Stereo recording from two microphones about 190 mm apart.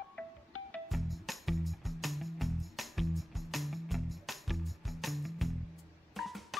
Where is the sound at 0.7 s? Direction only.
Centre (ahead or behind).